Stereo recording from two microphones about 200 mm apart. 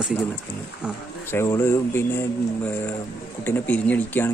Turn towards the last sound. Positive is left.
turn(degrees=10)  # may be behind; listen again after turning